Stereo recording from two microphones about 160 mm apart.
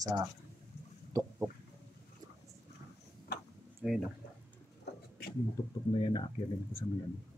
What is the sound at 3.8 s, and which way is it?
Speech, 5° right (ahead or behind).